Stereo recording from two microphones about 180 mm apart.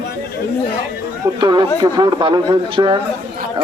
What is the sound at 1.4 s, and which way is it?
A man's voice, 25° right (ahead or behind).